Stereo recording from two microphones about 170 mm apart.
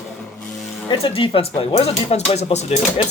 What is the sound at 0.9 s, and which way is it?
Speech, 35° left (ahead or behind).